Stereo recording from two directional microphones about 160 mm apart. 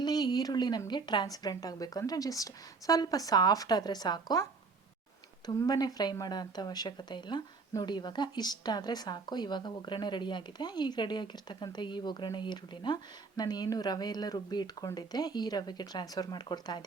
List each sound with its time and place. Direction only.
0.0 s speech: 25° left (ahead or behind)
5.5 s speech: 25° left (ahead or behind)